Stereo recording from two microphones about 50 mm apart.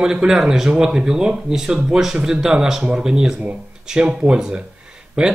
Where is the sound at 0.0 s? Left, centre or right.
Centre.